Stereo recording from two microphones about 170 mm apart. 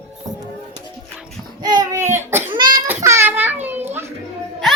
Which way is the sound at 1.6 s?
25° right (ahead or behind).